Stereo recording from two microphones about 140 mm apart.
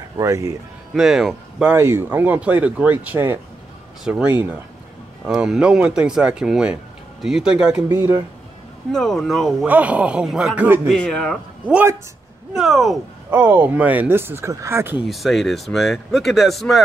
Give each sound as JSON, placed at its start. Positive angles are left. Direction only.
{"t": 0.2, "sound": "speech", "side_deg": -20}
{"t": 0.9, "sound": "speech", "side_deg": 0}
{"t": 1.7, "sound": "speech", "side_deg": -15}
{"t": 7.9, "sound": "speech", "side_deg": -20}
{"t": 8.9, "sound": "speech", "side_deg": 0}
{"t": 9.7, "sound": "speech", "side_deg": -10}
{"t": 10.9, "sound": "speech", "side_deg": 5}
{"t": 11.6, "sound": "speech", "side_deg": -10}
{"t": 15.0, "sound": "speech", "side_deg": 0}